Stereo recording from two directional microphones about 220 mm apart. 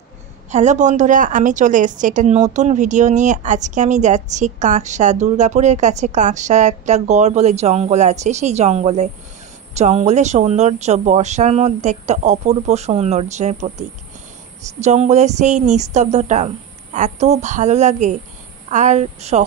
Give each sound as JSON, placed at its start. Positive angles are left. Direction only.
{"t": 0.5, "sound": "a woman's voice", "side_deg": -30}